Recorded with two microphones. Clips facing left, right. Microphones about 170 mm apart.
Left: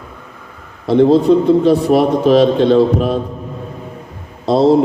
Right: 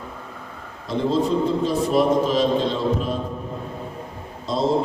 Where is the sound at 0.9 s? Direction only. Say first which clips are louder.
Left 11 dB; 65° left (ahead or behind).